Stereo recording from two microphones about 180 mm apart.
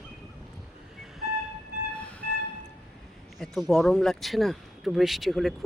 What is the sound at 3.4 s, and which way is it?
Speech, centre (ahead or behind).